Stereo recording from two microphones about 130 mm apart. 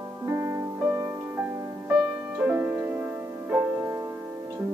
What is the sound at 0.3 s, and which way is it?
Music, 20° right (ahead or behind).